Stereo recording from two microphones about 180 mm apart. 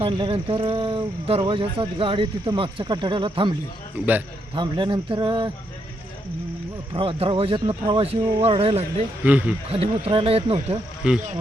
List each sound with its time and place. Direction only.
0.0 s speech: 30° right (ahead or behind)
4.5 s speech: 25° right (ahead or behind)
6.9 s speech: 30° right (ahead or behind)
9.2 s speech: 10° right (ahead or behind)
9.7 s speech: 30° right (ahead or behind)
11.0 s speech: 5° right (ahead or behind)